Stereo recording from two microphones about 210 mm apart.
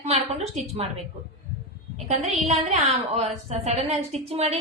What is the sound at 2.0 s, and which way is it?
A woman's voice, 30° right (ahead or behind).